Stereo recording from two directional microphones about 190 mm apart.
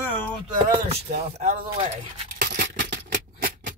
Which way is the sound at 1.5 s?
50° right (ahead or behind).